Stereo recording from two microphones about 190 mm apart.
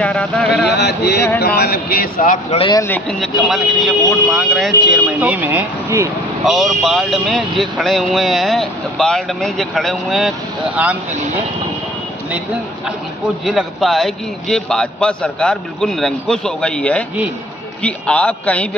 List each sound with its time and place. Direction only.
0.0 s a man's voice: 5° left (ahead or behind)
0.7 s a man's voice: 60° left (ahead or behind)
2.5 s a man's voice: 30° left (ahead or behind)
2.8 s speech: 5° left (ahead or behind); by 6.1 s 15° right (ahead or behind)
6.4 s speech: centre (ahead or behind)
13.2 s a man's voice: centre (ahead or behind)